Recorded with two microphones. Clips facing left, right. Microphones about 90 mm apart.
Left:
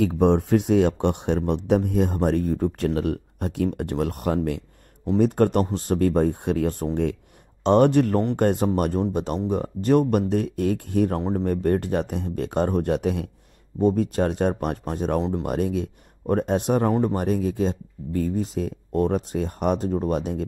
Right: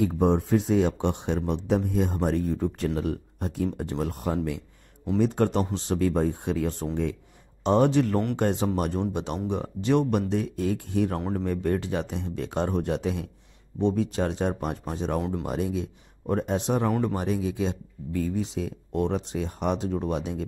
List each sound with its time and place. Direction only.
0.2 s speech: 70° left (ahead or behind)
5.2 s speech: 55° left (ahead or behind)
11.1 s speech: 30° left (ahead or behind)
11.4 s speech: 50° left (ahead or behind)
15.1 s speech: 35° left (ahead or behind)
15.4 s speech: 55° left (ahead or behind)